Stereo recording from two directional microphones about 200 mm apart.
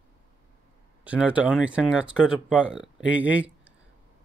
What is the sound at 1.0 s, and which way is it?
Speech, 5° right (ahead or behind).